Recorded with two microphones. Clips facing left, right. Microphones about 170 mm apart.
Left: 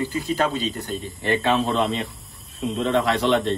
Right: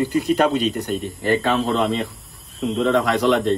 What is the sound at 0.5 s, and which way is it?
Speech, 65° right (ahead or behind).